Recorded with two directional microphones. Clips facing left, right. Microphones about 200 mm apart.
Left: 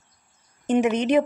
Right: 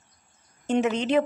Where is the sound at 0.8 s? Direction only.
15° left (ahead or behind).